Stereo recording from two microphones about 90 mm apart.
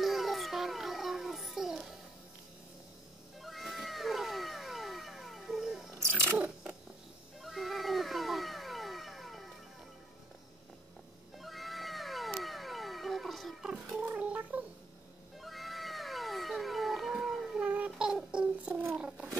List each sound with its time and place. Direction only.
0.0 s a sound: centre (ahead or behind)
3.3 s cat: centre (ahead or behind)
6.3 s a sound: 10° right (ahead or behind)
7.4 s cat: centre (ahead or behind)
11.3 s cat: centre (ahead or behind)
14.0 s cat: 15° right (ahead or behind)
15.4 s cat: centre (ahead or behind)
17.6 s child singing: 15° right (ahead or behind)
18.9 s cat: 10° right (ahead or behind)